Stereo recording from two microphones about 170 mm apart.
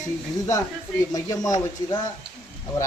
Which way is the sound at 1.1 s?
20° left (ahead or behind).